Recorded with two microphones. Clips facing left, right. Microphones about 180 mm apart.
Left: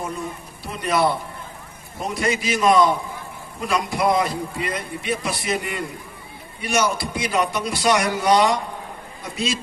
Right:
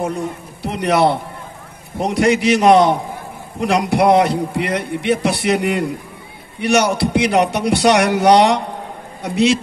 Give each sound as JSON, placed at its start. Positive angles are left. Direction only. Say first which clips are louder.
{"t": 0.0, "sound": "a man's voice", "louder": "right 7 dB", "side_deg": -70}